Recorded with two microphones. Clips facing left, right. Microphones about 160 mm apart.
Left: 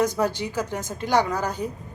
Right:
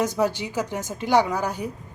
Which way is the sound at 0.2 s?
15° right (ahead or behind).